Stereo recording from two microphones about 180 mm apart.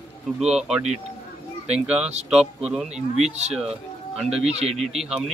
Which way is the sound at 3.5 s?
Centre (ahead or behind).